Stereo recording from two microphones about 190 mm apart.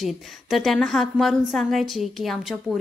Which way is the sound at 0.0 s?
Centre (ahead or behind).